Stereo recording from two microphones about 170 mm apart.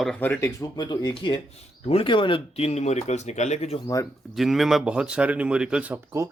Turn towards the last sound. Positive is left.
turn(degrees=-15)  # may be behind; listen again after turning